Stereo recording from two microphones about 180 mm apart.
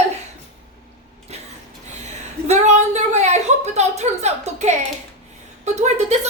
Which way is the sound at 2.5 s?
40° right (ahead or behind).